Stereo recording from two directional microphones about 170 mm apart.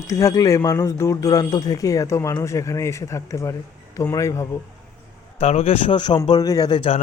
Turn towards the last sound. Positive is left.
turn(degrees=30)  # may be behind; listen again after turning